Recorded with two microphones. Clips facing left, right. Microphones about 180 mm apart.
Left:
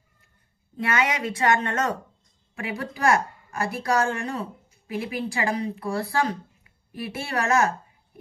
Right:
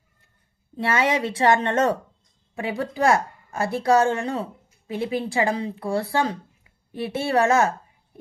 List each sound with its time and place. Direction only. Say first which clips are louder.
0.7 s a woman's voice: right 3 dB; 30° right (ahead or behind)